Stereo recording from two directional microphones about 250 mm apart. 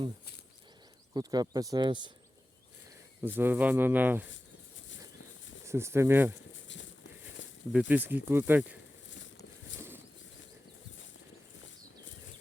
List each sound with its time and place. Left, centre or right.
1.1 s speech: centre
3.2 s speech: centre
5.6 s speech: centre
6.7 s a sound: left
7.7 s speech: centre
9.0 s a sound: left